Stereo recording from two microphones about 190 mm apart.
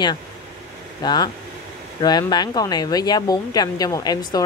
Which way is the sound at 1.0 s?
20° left (ahead or behind).